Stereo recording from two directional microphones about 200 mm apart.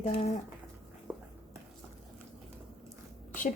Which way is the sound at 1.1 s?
5° right (ahead or behind).